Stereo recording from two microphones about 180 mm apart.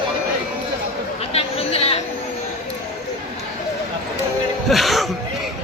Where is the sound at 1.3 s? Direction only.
35° left (ahead or behind).